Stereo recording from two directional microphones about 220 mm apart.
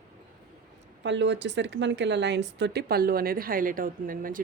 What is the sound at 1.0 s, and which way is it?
Speech, 55° right (ahead or behind).